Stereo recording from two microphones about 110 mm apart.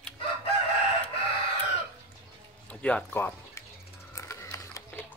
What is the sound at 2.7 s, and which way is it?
Speech, 10° left (ahead or behind).